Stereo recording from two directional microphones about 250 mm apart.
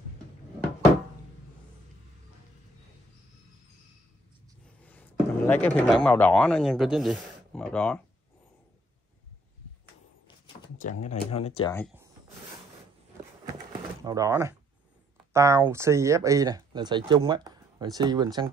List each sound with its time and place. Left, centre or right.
4.8 s a sound: centre
6.0 s speech: centre
10.8 s speech: left
14.0 s speech: centre